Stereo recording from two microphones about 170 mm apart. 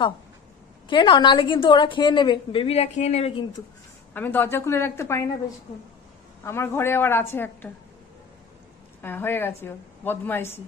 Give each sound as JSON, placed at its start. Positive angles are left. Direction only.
{"t": 0.8, "sound": "a woman's voice", "side_deg": 30}
{"t": 4.1, "sound": "a woman's voice", "side_deg": 10}
{"t": 6.4, "sound": "a woman's voice", "side_deg": 15}
{"t": 9.0, "sound": "a woman's voice", "side_deg": 10}